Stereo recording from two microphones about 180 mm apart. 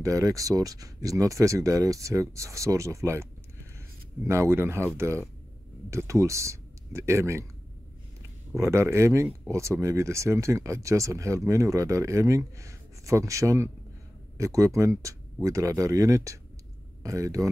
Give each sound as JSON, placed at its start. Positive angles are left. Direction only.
{"t": 0.0, "sound": "speech", "side_deg": -20}
{"t": 4.3, "sound": "speech", "side_deg": -15}
{"t": 8.5, "sound": "speech", "side_deg": -15}